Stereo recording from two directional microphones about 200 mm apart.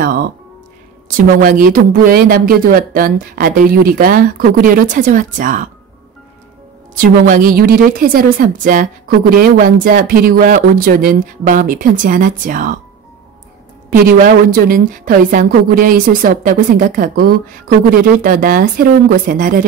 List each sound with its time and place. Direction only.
0.0 s music: 45° right (ahead or behind)
1.0 s a woman's voice: 40° right (ahead or behind)
7.0 s a woman's voice: 45° right (ahead or behind)
13.8 s a woman's voice: 45° right (ahead or behind)